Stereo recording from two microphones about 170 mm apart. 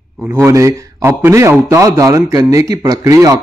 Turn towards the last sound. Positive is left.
turn(degrees=-20)  # may be behind; listen again after turning